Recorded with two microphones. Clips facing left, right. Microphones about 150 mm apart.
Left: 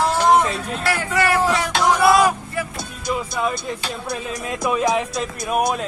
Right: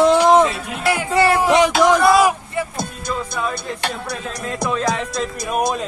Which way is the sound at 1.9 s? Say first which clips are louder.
Left 1 dB; centre (ahead or behind).